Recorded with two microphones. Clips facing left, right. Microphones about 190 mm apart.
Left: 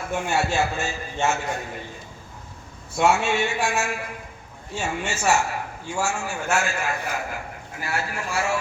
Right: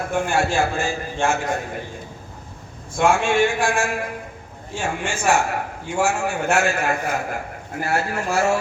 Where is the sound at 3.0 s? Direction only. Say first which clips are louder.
Right 3 dB; 50° right (ahead or behind).